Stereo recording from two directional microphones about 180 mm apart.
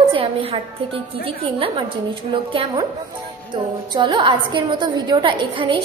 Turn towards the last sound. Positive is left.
turn(degrees=-25)  # may be behind; listen again after turning